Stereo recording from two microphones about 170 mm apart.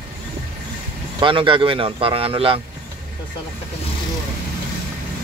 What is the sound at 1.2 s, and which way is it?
Speech, 30° right (ahead or behind).